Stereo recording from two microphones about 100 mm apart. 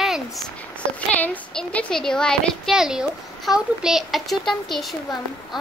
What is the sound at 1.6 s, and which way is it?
Speech, 10° left (ahead or behind).